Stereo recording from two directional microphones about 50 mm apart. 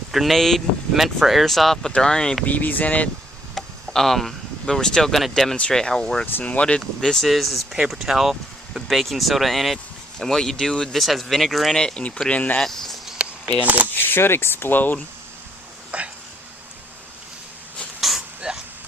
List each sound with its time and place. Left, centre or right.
0.1 s speech: centre
2.4 s speech: left
3.5 s a sound: centre
4.6 s speech: centre
6.7 s speech: centre
11.7 s speech: centre
12.3 s speech: left
12.5 s speech: centre
13.2 s a sound: right
13.9 s speech: left
15.9 s a sound: right
18.0 s a sound: centre
18.5 s vehicle: centre